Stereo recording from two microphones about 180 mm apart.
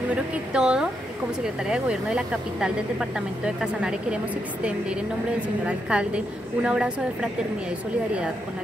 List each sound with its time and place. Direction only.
0.1 s speech: 5° right (ahead or behind)
5.7 s speech: 5° right (ahead or behind)